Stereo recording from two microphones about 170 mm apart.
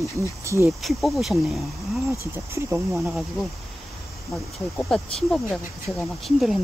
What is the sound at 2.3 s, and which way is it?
Speech, 15° right (ahead or behind).